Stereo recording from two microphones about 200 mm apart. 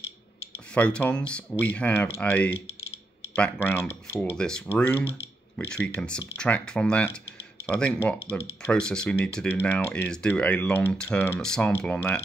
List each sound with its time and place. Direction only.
0.7 s speech: 5° left (ahead or behind)